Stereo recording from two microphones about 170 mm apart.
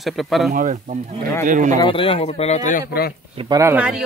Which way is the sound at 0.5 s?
50° right (ahead or behind).